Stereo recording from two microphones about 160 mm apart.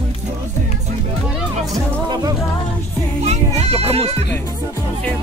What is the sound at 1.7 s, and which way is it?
Music, 25° right (ahead or behind).